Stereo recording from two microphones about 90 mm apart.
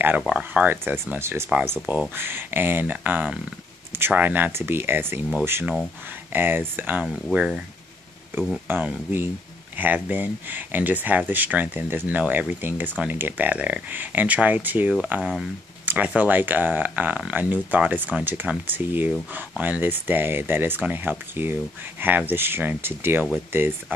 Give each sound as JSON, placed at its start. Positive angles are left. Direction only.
{"t": 0.3, "sound": "speech", "side_deg": -20}
{"t": 7.3, "sound": "speech", "side_deg": -10}
{"t": 8.6, "sound": "speech", "side_deg": -20}
{"t": 15.8, "sound": "a sound", "side_deg": -20}
{"t": 16.2, "sound": "speech", "side_deg": -20}